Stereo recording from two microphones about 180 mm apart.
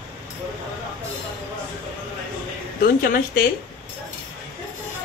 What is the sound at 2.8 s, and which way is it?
Speech, 55° left (ahead or behind).